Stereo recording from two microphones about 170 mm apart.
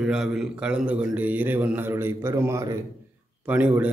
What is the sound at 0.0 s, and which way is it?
A man's voice, 5° right (ahead or behind).